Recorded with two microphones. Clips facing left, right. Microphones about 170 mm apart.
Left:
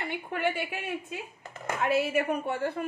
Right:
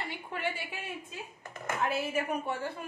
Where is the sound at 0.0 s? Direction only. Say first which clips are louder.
Left 6 dB; 65° left (ahead or behind).